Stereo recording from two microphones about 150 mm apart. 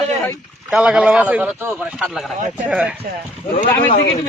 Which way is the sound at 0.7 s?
5° right (ahead or behind).